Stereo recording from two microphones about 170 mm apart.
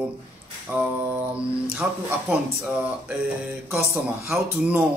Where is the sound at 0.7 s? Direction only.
10° right (ahead or behind).